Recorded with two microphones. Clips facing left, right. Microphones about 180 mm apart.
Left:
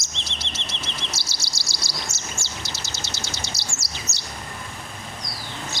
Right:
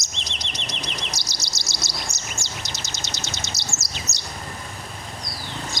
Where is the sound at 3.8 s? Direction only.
20° right (ahead or behind).